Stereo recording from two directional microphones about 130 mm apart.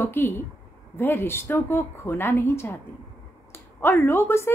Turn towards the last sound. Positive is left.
turn(degrees=20)  # may be behind; listen again after turning